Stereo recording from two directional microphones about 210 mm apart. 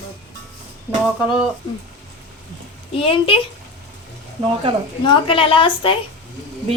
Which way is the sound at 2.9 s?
25° left (ahead or behind).